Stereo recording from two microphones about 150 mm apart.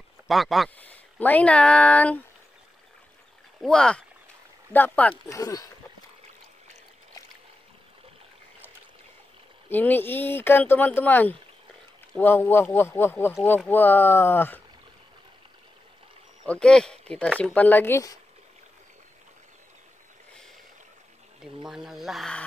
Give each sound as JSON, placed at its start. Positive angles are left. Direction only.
{"t": 0.3, "sound": "speech", "side_deg": 0}
{"t": 0.7, "sound": "speech", "side_deg": 10}
{"t": 3.6, "sound": "speech", "side_deg": 5}
{"t": 5.3, "sound": "speech", "side_deg": 20}
{"t": 9.7, "sound": "speech", "side_deg": 10}
{"t": 16.4, "sound": "speech", "side_deg": 5}
{"t": 21.6, "sound": "speech", "side_deg": 0}